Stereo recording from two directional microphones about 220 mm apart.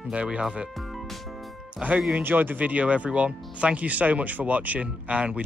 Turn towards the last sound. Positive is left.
turn(degrees=-5)  # may be behind; listen again after turning